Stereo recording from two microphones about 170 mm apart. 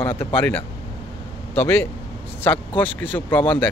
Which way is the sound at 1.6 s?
10° left (ahead or behind).